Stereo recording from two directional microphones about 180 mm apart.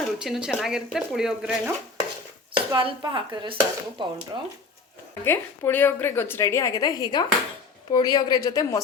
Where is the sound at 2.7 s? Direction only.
25° right (ahead or behind).